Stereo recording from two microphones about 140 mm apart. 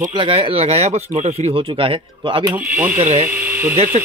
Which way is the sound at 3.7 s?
50° right (ahead or behind).